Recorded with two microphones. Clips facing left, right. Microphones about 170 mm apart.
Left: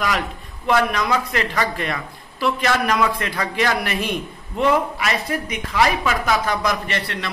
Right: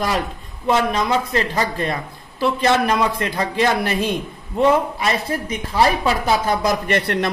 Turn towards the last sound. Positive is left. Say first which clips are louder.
# right 7 dB
turn(degrees=-50)  # may be behind; listen again after turning